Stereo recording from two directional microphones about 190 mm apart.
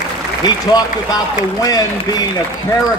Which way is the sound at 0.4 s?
20° left (ahead or behind).